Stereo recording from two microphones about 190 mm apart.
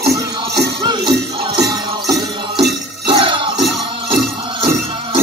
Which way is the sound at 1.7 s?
20° right (ahead or behind).